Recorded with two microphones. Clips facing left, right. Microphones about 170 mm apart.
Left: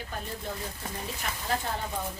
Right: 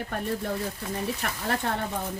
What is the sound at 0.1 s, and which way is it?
A woman's voice, 65° right (ahead or behind).